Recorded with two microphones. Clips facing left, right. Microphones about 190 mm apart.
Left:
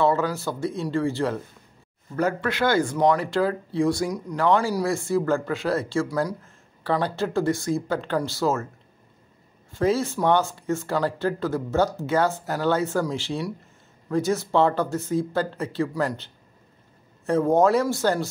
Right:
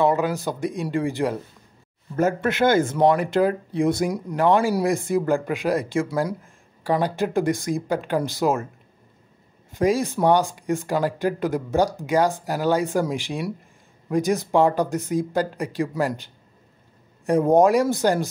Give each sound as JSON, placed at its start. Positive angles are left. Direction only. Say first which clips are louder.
{"t": 0.0, "sound": "speech", "louder": "right 2 dB", "side_deg": -15}
{"t": 9.7, "sound": "speech", "louder": "right 2 dB", "side_deg": -15}
{"t": 17.3, "sound": "speech", "louder": "right 2 dB", "side_deg": -15}